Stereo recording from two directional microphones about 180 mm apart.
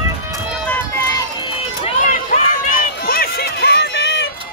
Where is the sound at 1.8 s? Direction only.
45° left (ahead or behind); by 4.3 s 75° left (ahead or behind).